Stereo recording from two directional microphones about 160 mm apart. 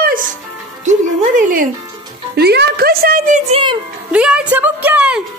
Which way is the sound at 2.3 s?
90° right.